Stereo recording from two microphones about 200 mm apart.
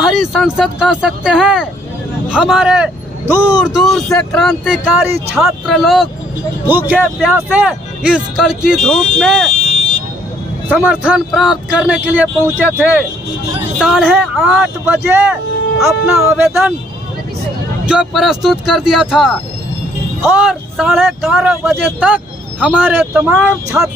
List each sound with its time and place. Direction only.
0.0 s speech: centre (ahead or behind)
9.5 s vehicle: 35° left (ahead or behind)
10.7 s speech: 5° right (ahead or behind)
17.8 s speech: 5° right (ahead or behind)